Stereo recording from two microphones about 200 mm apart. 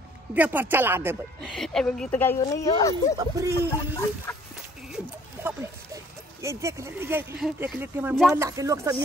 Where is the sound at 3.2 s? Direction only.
15° right (ahead or behind).